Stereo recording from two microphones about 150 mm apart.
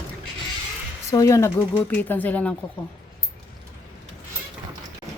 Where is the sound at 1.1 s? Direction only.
20° left (ahead or behind).